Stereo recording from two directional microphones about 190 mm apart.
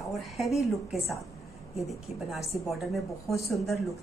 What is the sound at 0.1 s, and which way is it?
Speech, centre (ahead or behind).